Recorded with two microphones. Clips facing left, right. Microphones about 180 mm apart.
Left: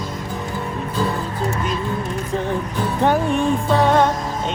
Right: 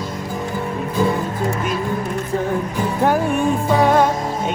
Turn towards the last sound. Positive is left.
turn(degrees=-10)  # may be behind; listen again after turning